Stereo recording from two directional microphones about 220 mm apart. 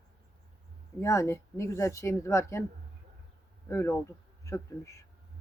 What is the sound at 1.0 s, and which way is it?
Speech, 15° left (ahead or behind).